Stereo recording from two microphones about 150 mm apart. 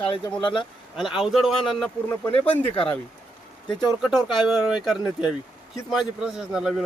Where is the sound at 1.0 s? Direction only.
5° right (ahead or behind).